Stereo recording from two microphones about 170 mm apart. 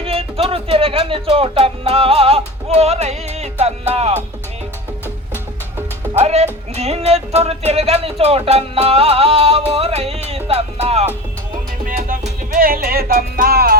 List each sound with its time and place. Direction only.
0.0 s speech: 35° right (ahead or behind)
6.1 s music: 40° right (ahead or behind)
11.9 s music: 55° right (ahead or behind)
12.6 s music: 60° right (ahead or behind)